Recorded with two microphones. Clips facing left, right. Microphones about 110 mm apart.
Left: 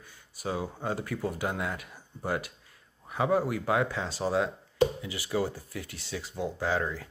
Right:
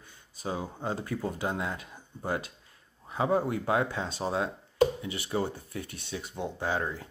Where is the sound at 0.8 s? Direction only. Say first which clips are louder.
Right 1 dB; 25° right (ahead or behind).